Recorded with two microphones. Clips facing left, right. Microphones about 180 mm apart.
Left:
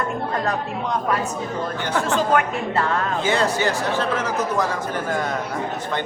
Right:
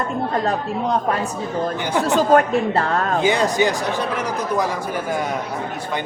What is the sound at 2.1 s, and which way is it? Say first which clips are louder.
Speech: right 7 dB; 40° right (ahead or behind).